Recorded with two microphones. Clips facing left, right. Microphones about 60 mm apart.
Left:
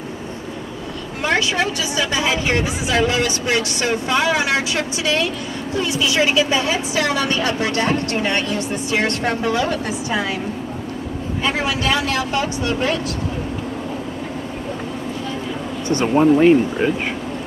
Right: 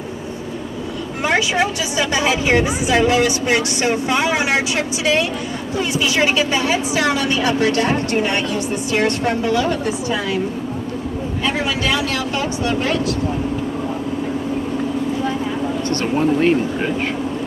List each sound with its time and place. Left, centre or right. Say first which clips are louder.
1.2 s a woman's voice: right 1 dB; centre
7.2 s a woman's voice: right 2 dB; centre
15.9 s speech: left 5 dB; centre